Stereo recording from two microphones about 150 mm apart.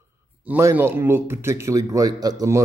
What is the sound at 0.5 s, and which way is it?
Speech, 15° right (ahead or behind).